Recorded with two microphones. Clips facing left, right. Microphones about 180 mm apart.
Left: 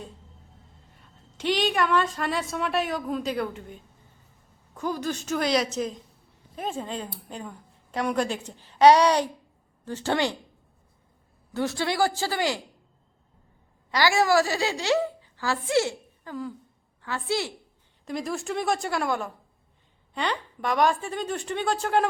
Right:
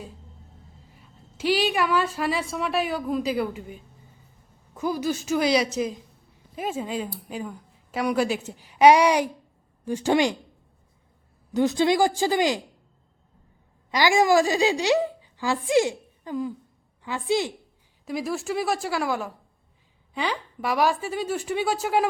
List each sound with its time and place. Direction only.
0.9 s a woman's voice: 5° right (ahead or behind)
11.5 s a woman's voice: 20° right (ahead or behind)
13.9 s a woman's voice: 15° right (ahead or behind)
18.0 s a woman's voice: 5° right (ahead or behind)